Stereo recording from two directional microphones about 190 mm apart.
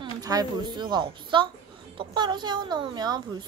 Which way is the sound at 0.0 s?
20° right (ahead or behind).